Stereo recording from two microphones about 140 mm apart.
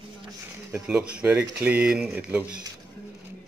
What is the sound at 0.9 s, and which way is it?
A man's voice, 10° right (ahead or behind).